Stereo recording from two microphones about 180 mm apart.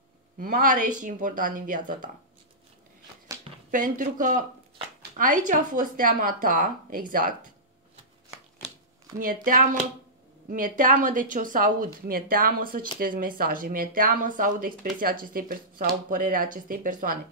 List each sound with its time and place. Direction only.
0.4 s speech: 50° right (ahead or behind)
3.7 s speech: 50° right (ahead or behind)
9.2 s speech: 50° right (ahead or behind)